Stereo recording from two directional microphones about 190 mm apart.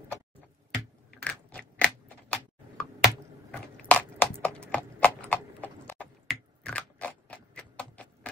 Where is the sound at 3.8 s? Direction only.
5° left (ahead or behind).